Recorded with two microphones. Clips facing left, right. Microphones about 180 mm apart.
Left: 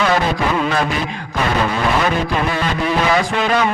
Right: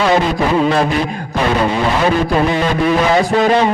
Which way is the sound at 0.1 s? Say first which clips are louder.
Right 4 dB; 30° right (ahead or behind).